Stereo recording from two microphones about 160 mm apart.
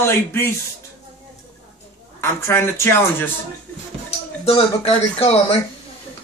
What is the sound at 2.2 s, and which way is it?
Speech, 15° left (ahead or behind).